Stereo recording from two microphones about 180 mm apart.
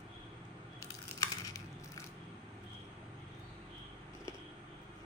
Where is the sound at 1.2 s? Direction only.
15° left (ahead or behind).